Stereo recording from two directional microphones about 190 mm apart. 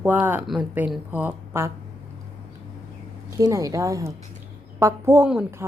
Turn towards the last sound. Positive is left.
turn(degrees=-10)  # may be behind; listen again after turning